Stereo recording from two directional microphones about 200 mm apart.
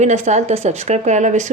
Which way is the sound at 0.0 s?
35° right (ahead or behind).